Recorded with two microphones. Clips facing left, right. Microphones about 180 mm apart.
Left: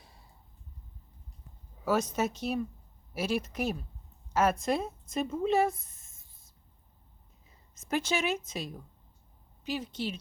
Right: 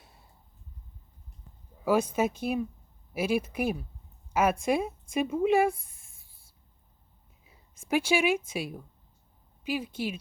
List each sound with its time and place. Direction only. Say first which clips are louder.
1.8 s speech: right 3 dB; 10° right (ahead or behind)
7.4 s a sound: right 4 dB; 10° right (ahead or behind)
8.4 s speech: right 4 dB; 10° right (ahead or behind)